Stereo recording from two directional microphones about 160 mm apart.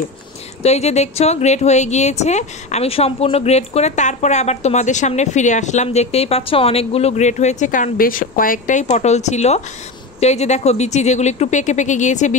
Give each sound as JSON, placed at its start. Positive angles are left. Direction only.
{"t": 0.6, "sound": "speech", "side_deg": 40}